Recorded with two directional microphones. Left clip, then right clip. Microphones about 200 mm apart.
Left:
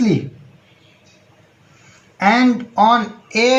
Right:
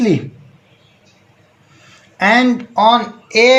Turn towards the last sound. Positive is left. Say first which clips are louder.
# right 5 dB
turn(degrees=-30)  # may be behind; listen again after turning